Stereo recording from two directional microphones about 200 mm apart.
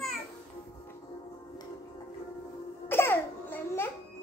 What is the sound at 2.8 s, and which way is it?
Cough, 10° left (ahead or behind).